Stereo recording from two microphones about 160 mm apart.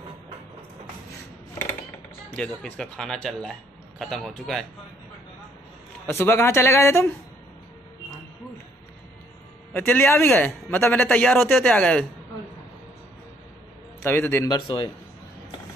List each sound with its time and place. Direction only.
2.3 s speech: 5° left (ahead or behind)
6.1 s a man's voice: 15° left (ahead or behind)
9.8 s a man's voice: 10° left (ahead or behind)
14.0 s a man's voice: 15° left (ahead or behind)